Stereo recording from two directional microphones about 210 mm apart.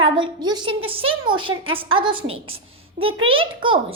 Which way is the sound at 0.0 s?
20° right (ahead or behind).